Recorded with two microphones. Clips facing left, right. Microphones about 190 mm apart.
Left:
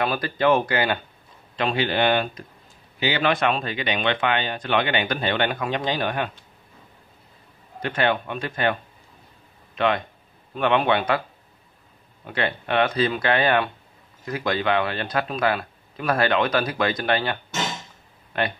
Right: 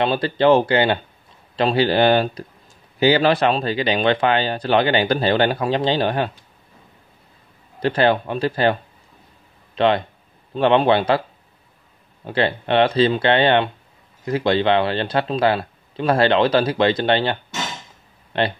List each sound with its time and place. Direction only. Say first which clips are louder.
0.0 s speech: right 5 dB; 30° right (ahead or behind)
7.8 s speech: right 6 dB; 30° right (ahead or behind)
9.8 s speech: right 5 dB; 30° right (ahead or behind)
12.3 s speech: right 6 dB; 30° right (ahead or behind)